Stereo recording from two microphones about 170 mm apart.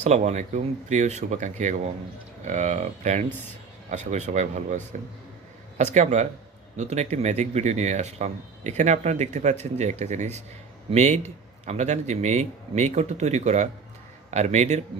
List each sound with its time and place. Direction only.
0.0 s speech: 45° right (ahead or behind)